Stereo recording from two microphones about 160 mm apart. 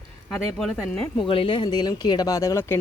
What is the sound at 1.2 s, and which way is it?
Speech, 35° left (ahead or behind).